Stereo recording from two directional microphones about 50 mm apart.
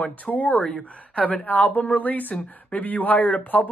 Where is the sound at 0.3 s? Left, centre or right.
Left.